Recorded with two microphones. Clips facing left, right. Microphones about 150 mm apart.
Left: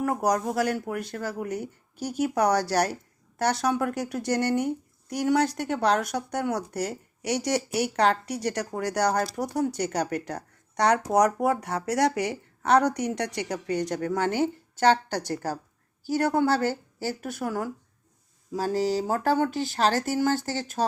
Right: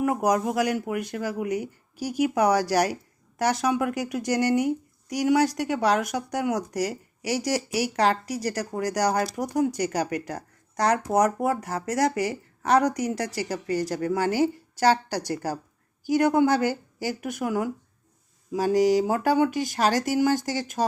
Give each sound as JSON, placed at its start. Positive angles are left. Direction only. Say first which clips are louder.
{"t": 0.0, "sound": "a woman's voice", "louder": "right 2 dB", "side_deg": -10}